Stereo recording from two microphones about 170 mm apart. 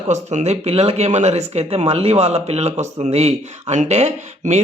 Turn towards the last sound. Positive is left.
turn(degrees=-40)  # may be behind; listen again after turning